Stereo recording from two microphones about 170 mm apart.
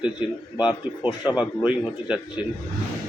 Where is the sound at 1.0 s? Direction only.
25° left (ahead or behind).